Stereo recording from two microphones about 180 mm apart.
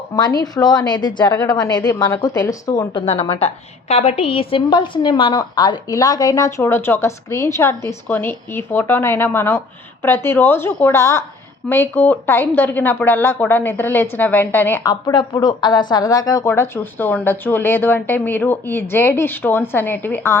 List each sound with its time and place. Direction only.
0.2 s a woman's voice: 20° left (ahead or behind)
3.1 s speech: 30° left (ahead or behind); by 20.3 s 10° left (ahead or behind)